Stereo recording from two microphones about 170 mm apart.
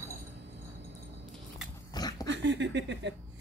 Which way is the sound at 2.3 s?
90° right.